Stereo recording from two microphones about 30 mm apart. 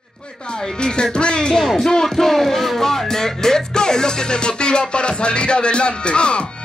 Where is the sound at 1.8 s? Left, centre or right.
Centre.